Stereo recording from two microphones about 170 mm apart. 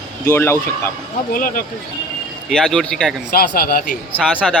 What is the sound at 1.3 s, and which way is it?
Speech, 55° left (ahead or behind).